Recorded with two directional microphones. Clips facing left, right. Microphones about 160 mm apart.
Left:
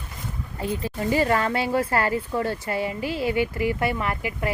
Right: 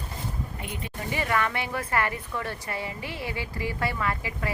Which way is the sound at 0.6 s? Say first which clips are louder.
Left 14 dB; 35° left (ahead or behind).